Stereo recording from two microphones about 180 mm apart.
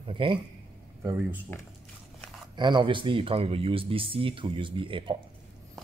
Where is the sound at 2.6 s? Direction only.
25° right (ahead or behind).